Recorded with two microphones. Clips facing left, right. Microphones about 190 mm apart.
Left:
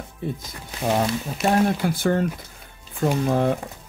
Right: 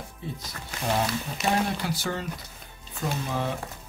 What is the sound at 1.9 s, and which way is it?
Speech, 55° left (ahead or behind).